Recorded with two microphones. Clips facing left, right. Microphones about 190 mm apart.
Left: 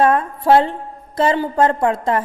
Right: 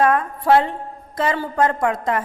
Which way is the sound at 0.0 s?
30° left (ahead or behind).